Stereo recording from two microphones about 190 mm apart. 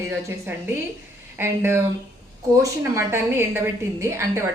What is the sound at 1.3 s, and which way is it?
A woman's voice, 10° right (ahead or behind).